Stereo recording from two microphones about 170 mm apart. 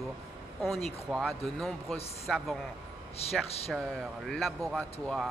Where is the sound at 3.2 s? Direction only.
35° left (ahead or behind).